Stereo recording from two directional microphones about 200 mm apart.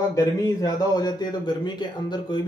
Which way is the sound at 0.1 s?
20° left (ahead or behind).